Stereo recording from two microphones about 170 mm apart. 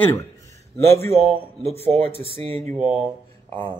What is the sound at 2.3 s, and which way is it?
Speech, 35° right (ahead or behind).